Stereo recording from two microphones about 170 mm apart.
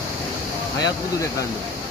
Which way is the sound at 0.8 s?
20° left (ahead or behind).